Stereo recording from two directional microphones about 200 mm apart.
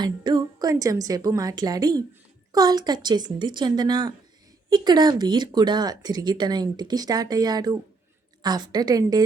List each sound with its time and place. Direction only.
0.0 s speech: 20° right (ahead or behind)